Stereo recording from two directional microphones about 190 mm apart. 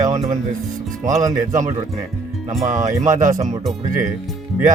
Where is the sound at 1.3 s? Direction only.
40° right (ahead or behind).